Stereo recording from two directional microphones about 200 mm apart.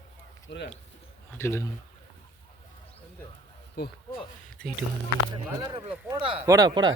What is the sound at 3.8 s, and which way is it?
Speech, 55° left (ahead or behind).